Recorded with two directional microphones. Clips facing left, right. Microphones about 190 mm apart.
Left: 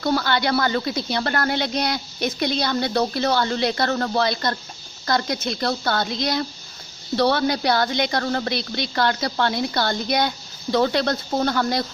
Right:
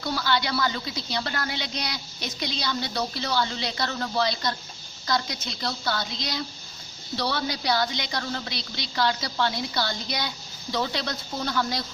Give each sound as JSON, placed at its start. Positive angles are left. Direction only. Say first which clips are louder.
{"t": 0.0, "sound": "speech", "louder": "left 6 dB", "side_deg": 55}